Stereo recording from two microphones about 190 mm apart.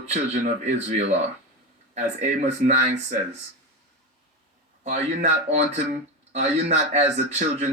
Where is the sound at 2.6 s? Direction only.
40° right (ahead or behind).